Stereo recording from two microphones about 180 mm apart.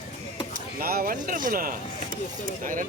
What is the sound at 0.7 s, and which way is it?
Speech, 55° right (ahead or behind).